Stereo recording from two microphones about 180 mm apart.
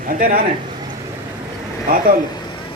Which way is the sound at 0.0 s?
50° right (ahead or behind).